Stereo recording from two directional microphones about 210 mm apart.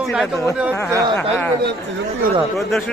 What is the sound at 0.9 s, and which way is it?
Speech, 15° right (ahead or behind).